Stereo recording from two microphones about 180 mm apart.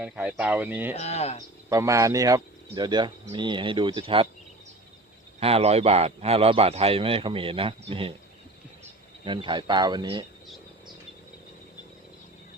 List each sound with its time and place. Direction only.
0.0 s speech: 5° right (ahead or behind)
0.9 s speech: 40° left (ahead or behind)
1.7 s speech: 15° right (ahead or behind)
5.4 s speech: 35° right (ahead or behind)
9.2 s speech: 25° right (ahead or behind)